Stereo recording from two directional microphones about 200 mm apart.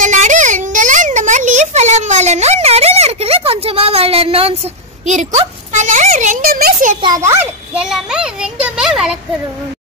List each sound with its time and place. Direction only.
0.0 s a sound: 40° right (ahead or behind)
5.0 s a child's voice: 35° right (ahead or behind)
7.0 s a child's voice: 20° right (ahead or behind)